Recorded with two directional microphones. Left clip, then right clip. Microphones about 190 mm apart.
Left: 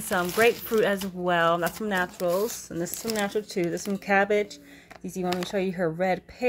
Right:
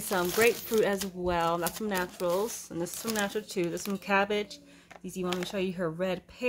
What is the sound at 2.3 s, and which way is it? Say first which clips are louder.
Speech: left 4 dB; 15° left (ahead or behind).